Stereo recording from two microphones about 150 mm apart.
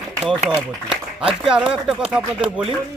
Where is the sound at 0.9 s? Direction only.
5° right (ahead or behind).